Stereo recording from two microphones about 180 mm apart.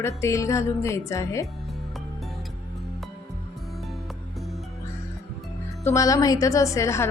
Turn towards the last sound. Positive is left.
turn(degrees=15)  # may be behind; listen again after turning